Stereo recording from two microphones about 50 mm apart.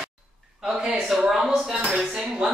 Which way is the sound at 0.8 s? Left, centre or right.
Centre.